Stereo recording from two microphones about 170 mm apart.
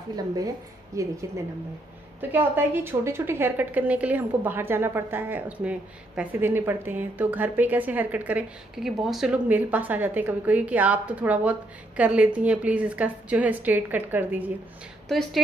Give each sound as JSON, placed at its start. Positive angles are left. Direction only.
{"t": 1.0, "sound": "a woman's voice", "side_deg": -20}
{"t": 2.3, "sound": "a woman's voice", "side_deg": -10}
{"t": 15.0, "sound": "a woman's voice", "side_deg": 0}